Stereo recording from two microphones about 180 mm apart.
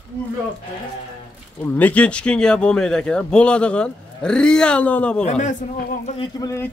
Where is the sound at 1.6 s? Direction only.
10° left (ahead or behind).